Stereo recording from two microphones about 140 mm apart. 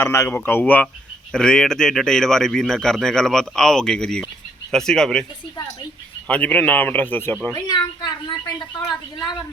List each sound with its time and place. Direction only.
0.0 s a man's voice: 20° left (ahead or behind)
6.2 s a man's voice: 10° left (ahead or behind)
7.5 s speech: 30° left (ahead or behind)